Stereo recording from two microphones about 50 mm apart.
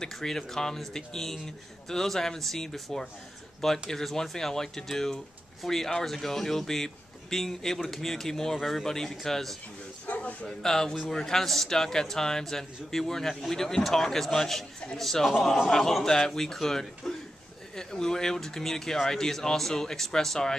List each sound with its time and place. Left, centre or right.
0.0 s speech: centre
10.0 s a sound: left
10.4 s speech: centre